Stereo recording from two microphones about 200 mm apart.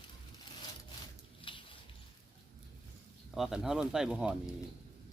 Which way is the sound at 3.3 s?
Centre (ahead or behind).